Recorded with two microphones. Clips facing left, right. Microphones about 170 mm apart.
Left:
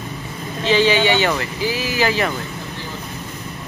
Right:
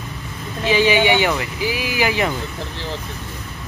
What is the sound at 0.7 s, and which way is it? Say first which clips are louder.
Speech: even; 15° right (ahead or behind).